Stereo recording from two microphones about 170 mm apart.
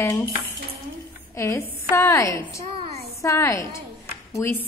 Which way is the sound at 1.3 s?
15° left (ahead or behind).